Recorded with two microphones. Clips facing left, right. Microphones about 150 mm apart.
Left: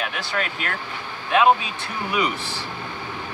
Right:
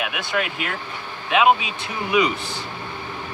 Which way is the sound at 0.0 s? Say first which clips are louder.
Right 2 dB; 10° right (ahead or behind).